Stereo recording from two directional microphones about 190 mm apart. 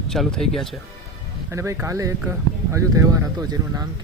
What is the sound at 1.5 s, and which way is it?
Speech, 15° right (ahead or behind).